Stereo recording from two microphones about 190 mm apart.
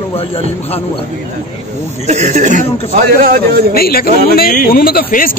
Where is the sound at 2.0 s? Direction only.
35° right (ahead or behind).